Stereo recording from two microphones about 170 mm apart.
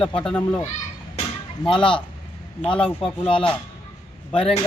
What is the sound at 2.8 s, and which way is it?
Speech, centre (ahead or behind).